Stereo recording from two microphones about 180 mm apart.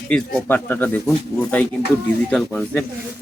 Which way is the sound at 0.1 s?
10° left (ahead or behind).